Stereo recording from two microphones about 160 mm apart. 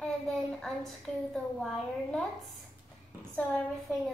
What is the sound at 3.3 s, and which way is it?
Speech, 10° left (ahead or behind).